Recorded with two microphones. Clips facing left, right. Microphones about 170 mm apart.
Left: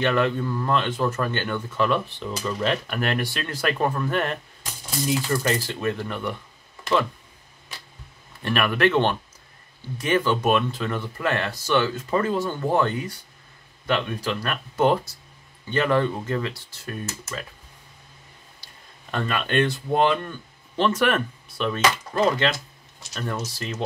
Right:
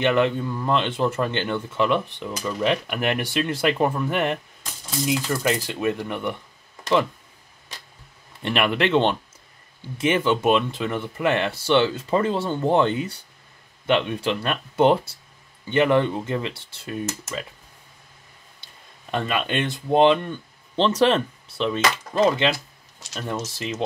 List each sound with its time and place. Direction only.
0.0 s speech: 20° right (ahead or behind)
8.4 s speech: 20° right (ahead or behind)
18.6 s speech: 15° right (ahead or behind)